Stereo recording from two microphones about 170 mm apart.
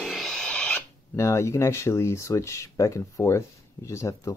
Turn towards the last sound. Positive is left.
turn(degrees=20)  # may be behind; listen again after turning